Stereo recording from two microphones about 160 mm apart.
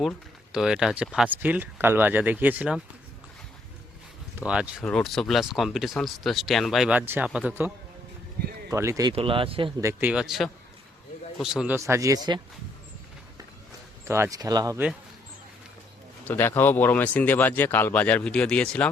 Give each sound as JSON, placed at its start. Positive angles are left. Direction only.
{"t": 0.5, "sound": "speech", "side_deg": -5}
{"t": 4.4, "sound": "speech", "side_deg": -10}
{"t": 4.8, "sound": "speech", "side_deg": 5}
{"t": 8.7, "sound": "speech", "side_deg": -20}
{"t": 9.0, "sound": "speech", "side_deg": -35}
{"t": 9.8, "sound": "speech", "side_deg": -10}
{"t": 11.8, "sound": "speech", "side_deg": -20}
{"t": 14.1, "sound": "speech", "side_deg": -20}
{"t": 16.2, "sound": "speech", "side_deg": 15}